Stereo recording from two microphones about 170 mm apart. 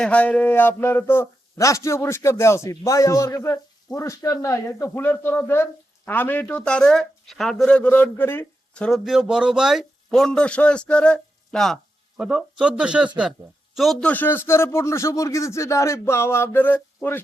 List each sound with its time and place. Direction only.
0.0 s a man's voice: 10° left (ahead or behind)